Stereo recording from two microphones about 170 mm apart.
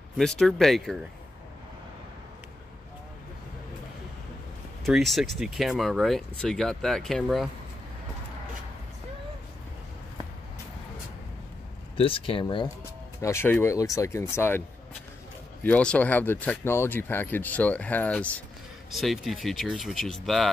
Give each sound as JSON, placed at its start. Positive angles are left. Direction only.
{"t": 0.2, "sound": "speech", "side_deg": 5}
{"t": 4.8, "sound": "speech", "side_deg": 0}
{"t": 12.0, "sound": "speech", "side_deg": 30}
{"t": 13.2, "sound": "speech", "side_deg": 15}
{"t": 15.6, "sound": "speech", "side_deg": 5}